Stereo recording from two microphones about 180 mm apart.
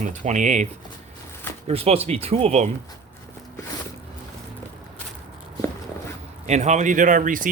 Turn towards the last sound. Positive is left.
turn(degrees=-45)  # may be behind; listen again after turning